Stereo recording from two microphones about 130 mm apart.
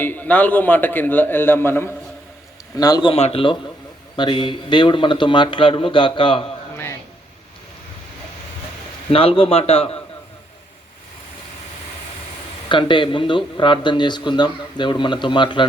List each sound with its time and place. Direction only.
0.0 s a man's voice: 15° left (ahead or behind)
2.7 s a man's voice: 30° left (ahead or behind)
3.1 s a man's voice: 50° left (ahead or behind)
4.2 s a man's voice: 40° left (ahead or behind)
9.0 s a man's voice: 45° left (ahead or behind)
12.6 s a man's voice: 40° left (ahead or behind)